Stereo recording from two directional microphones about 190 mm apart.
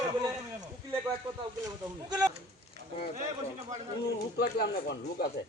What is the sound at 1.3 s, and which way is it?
Speech, 25° right (ahead or behind).